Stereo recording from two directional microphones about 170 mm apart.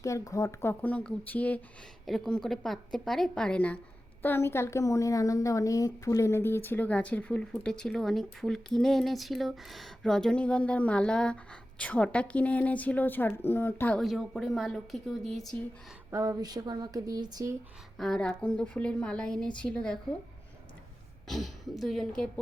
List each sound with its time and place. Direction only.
0.0 s a woman's voice: 20° left (ahead or behind); by 15.4 s centre (ahead or behind)
16.0 s a sound: 20° right (ahead or behind)
17.9 s a woman's voice: 5° left (ahead or behind)
21.2 s a woman's voice: centre (ahead or behind)